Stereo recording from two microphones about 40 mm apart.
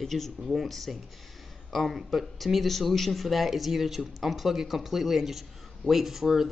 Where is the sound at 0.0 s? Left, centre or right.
Centre.